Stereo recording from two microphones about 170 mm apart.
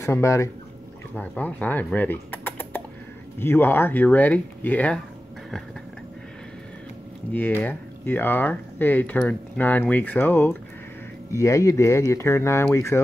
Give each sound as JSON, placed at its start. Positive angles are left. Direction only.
{"t": 0.0, "sound": "speech", "side_deg": 15}
{"t": 7.3, "sound": "speech", "side_deg": 10}